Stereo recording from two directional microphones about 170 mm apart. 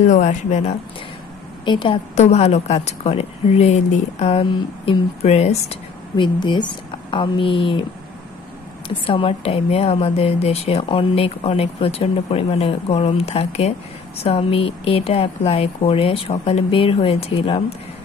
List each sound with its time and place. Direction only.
0.0 s speech: 45° left (ahead or behind)
1.7 s a woman's voice: 30° left (ahead or behind)
8.8 s a woman's voice: 30° left (ahead or behind)